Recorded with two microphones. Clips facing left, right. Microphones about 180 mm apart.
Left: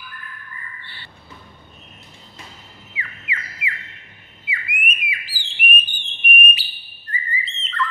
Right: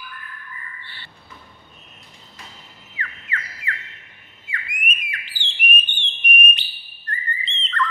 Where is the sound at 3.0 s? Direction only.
10° left (ahead or behind).